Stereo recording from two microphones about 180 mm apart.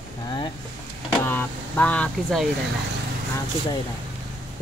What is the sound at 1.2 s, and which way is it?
Speech, 10° left (ahead or behind).